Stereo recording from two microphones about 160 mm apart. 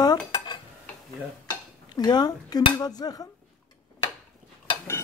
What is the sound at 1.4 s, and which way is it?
Dishes, 25° left (ahead or behind).